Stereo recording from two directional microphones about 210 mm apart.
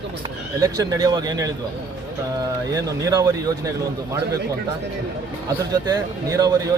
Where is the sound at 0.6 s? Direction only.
15° right (ahead or behind).